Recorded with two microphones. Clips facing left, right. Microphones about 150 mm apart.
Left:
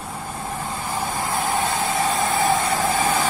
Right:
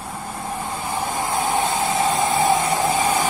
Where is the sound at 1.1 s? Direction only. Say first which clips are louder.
Right 2 dB; 20° right (ahead or behind).